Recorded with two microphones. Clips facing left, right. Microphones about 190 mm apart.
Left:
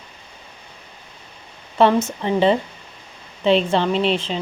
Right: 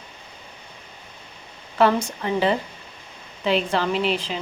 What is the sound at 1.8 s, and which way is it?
Speech, 25° left (ahead or behind).